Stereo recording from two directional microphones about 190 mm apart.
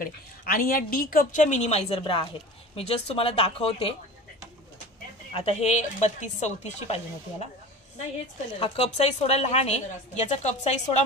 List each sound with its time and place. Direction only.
0.0 s a woman's voice: 50° left (ahead or behind); by 3.9 s 30° left (ahead or behind)
5.3 s a woman's voice: 30° left (ahead or behind)
8.5 s a woman's voice: 30° left (ahead or behind)